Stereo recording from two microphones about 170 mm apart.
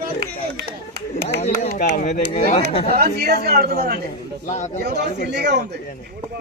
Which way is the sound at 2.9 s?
65° right (ahead or behind).